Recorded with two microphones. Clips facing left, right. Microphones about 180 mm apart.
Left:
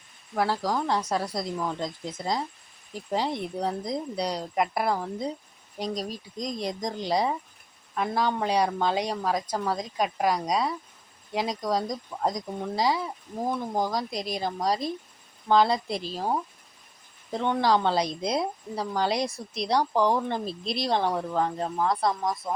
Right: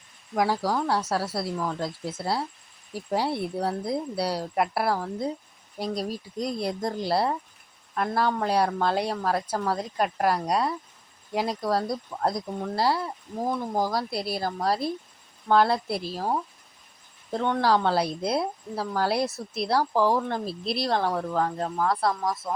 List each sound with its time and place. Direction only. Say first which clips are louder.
0.3 s a woman's voice: right 2 dB; 10° right (ahead or behind)
22.1 s speech: even; 15° left (ahead or behind)